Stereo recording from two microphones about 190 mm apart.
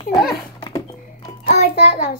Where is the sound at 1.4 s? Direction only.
50° left (ahead or behind).